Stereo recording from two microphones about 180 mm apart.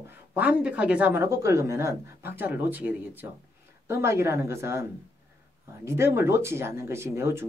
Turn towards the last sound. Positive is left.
turn(degrees=-15)  # may be behind; listen again after turning